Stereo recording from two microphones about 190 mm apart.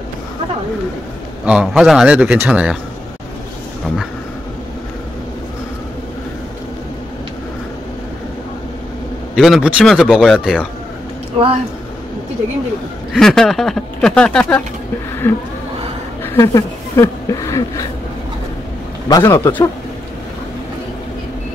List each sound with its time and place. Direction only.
1.4 s speech: 5° right (ahead or behind)
9.3 s speech: 5° right (ahead or behind)
11.3 s speech: 30° right (ahead or behind)
13.1 s a man's voice: 5° left (ahead or behind)
19.0 s a man's voice: 20° left (ahead or behind)